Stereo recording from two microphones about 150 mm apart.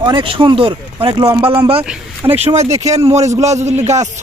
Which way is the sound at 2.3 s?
45° right (ahead or behind).